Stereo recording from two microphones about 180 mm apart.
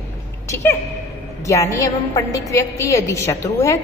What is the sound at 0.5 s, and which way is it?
A woman's voice, 15° left (ahead or behind).